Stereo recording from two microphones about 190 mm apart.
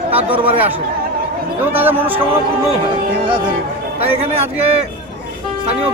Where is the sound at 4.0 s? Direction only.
35° right (ahead or behind).